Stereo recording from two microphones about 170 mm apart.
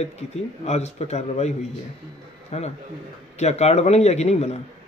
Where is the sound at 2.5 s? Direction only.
40° left (ahead or behind).